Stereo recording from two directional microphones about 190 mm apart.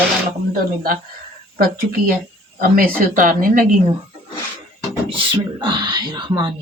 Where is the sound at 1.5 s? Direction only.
50° right (ahead or behind).